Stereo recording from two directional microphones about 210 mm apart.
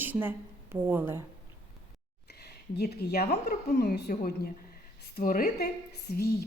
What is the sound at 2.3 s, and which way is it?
A woman's voice, 50° left (ahead or behind).